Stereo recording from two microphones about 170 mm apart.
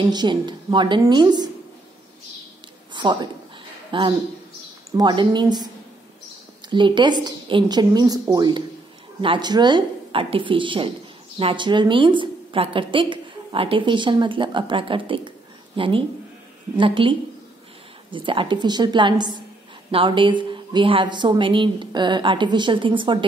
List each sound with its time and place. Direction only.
0.1 s a woman's voice: 25° right (ahead or behind)
2.9 s a sound: 25° right (ahead or behind)
3.9 s a woman's voice: 30° right (ahead or behind)
6.7 s a woman's voice: 25° right (ahead or behind)